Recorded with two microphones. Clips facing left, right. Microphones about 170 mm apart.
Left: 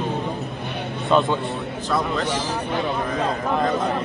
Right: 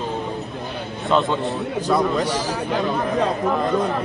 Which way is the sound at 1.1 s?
15° left (ahead or behind).